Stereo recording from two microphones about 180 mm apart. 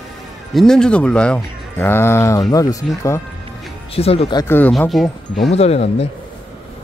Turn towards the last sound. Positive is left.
turn(degrees=35)  # may be behind; listen again after turning